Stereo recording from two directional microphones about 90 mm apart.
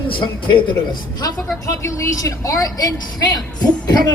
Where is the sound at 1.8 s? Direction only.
35° left (ahead or behind).